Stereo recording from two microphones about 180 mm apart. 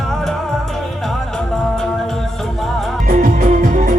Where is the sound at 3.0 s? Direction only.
50° right (ahead or behind).